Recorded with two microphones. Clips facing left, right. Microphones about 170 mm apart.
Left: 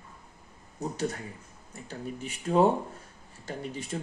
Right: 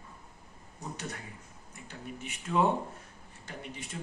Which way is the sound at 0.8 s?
35° left (ahead or behind).